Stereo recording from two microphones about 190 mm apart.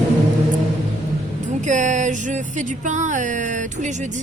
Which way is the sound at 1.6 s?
40° right (ahead or behind).